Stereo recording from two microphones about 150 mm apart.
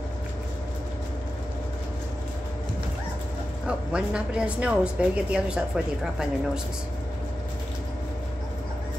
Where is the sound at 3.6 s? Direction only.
5° right (ahead or behind).